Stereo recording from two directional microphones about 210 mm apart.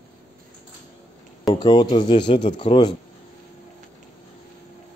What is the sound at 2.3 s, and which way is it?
Speech, 30° left (ahead or behind).